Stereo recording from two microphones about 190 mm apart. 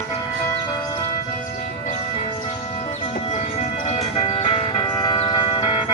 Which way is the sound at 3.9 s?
35° left (ahead or behind).